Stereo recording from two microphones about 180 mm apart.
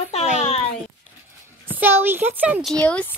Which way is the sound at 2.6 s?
5° left (ahead or behind).